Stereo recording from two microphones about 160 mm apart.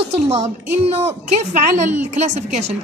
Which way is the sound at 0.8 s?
40° right (ahead or behind).